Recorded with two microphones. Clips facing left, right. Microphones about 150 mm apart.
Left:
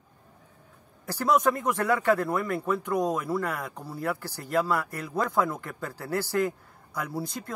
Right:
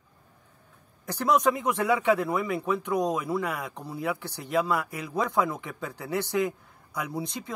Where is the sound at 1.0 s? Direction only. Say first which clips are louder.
Even; 5° left (ahead or behind).